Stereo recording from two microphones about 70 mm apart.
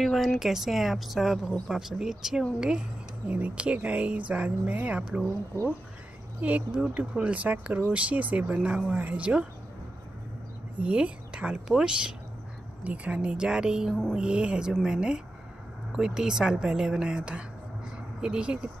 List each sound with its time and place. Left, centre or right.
0.0 s a woman's voice: centre
6.4 s speech: right
10.8 s speech: centre